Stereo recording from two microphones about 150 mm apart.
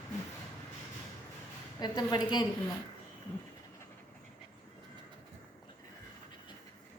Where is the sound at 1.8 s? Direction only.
30° left (ahead or behind).